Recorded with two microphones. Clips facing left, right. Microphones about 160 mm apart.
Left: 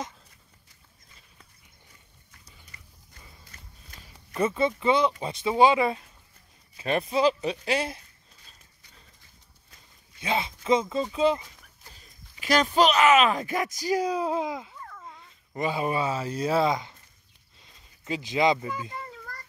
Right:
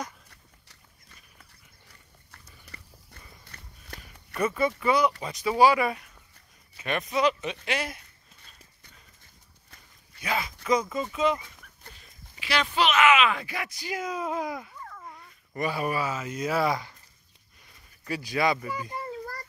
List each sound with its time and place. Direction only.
2.3 s a sound: 65° right (ahead or behind)
4.3 s speech: 25° left (ahead or behind)
10.2 s speech: 25° left (ahead or behind)
12.4 s speech: 45° left (ahead or behind); by 16.9 s 20° left (ahead or behind)
17.6 s a sound: 20° left (ahead or behind)
18.9 s children playing: 35° right (ahead or behind)